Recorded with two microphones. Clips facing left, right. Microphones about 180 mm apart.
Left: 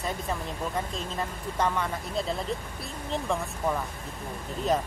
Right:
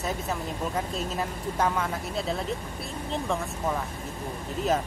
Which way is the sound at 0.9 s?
5° right (ahead or behind).